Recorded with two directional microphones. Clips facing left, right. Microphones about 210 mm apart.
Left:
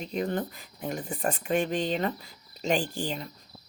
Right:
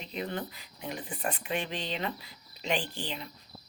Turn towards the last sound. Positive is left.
turn(degrees=45)  # may be behind; listen again after turning